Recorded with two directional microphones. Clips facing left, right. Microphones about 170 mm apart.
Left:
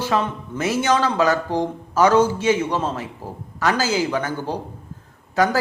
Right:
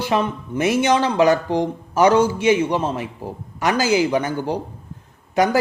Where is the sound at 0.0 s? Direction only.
15° right (ahead or behind).